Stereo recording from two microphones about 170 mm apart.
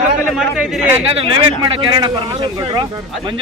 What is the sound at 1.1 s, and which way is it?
Speech, 30° right (ahead or behind).